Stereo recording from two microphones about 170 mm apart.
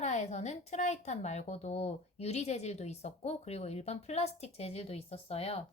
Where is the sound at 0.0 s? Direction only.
40° left (ahead or behind).